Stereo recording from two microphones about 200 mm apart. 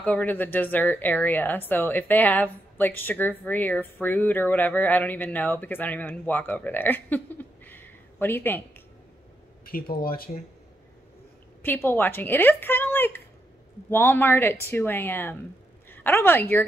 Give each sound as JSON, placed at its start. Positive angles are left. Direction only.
{"t": 0.0, "sound": "speech", "side_deg": 5}
{"t": 9.7, "sound": "speech", "side_deg": 45}
{"t": 11.6, "sound": "a woman's voice", "side_deg": 10}